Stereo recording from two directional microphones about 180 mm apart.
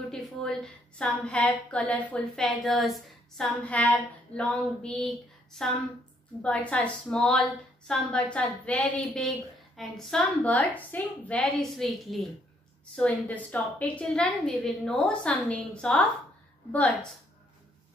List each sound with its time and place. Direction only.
0.1 s a woman's voice: 5° left (ahead or behind)